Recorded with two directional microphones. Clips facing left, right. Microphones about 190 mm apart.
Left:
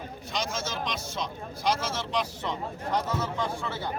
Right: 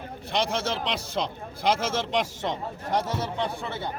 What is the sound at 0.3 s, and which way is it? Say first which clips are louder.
Speech: right 6 dB; 65° right (ahead or behind).